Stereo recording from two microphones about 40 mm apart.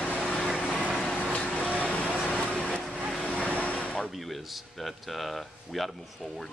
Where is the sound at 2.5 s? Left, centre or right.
Left.